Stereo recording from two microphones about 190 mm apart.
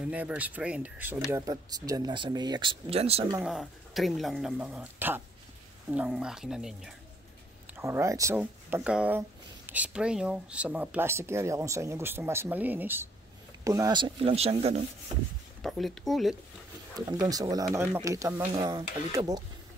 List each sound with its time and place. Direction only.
0.0 s speech: 5° right (ahead or behind); by 3.3 s 30° right (ahead or behind)
3.4 s speech: centre (ahead or behind)
7.7 s speech: 15° right (ahead or behind); by 14.9 s 35° right (ahead or behind)
15.6 s speech: centre (ahead or behind)
17.2 s speech: 20° right (ahead or behind)